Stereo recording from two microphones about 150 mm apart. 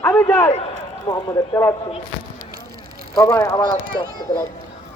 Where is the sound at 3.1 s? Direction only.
20° left (ahead or behind).